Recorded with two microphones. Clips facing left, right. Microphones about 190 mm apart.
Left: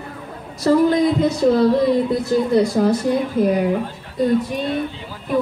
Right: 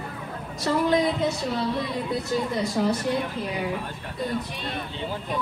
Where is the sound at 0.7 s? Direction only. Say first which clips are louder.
Left 10 dB; 40° left (ahead or behind).